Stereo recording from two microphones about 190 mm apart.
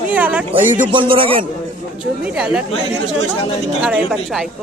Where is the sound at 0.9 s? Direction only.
30° right (ahead or behind).